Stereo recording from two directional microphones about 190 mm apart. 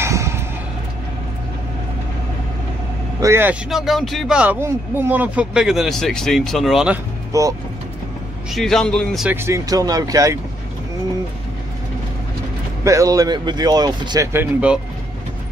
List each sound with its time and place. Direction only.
0.0 s a sound: 15° right (ahead or behind)
3.2 s speech: 15° right (ahead or behind)
3.7 s speech: centre (ahead or behind)
7.3 s speech: 15° right (ahead or behind)
8.5 s speech: centre (ahead or behind)
9.3 s speech: 15° right (ahead or behind)
12.8 s speech: 15° right (ahead or behind)